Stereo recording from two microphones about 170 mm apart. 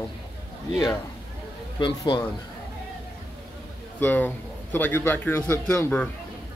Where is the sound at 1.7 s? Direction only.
25° left (ahead or behind).